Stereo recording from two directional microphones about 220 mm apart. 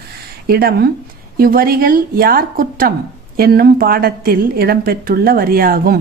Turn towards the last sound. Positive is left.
turn(degrees=-45)  # may be behind; listen again after turning